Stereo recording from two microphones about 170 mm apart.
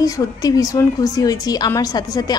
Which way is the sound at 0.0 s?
20° left (ahead or behind).